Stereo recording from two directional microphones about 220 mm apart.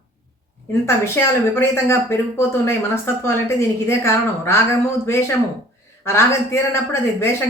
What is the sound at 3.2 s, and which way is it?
Speech, 10° left (ahead or behind).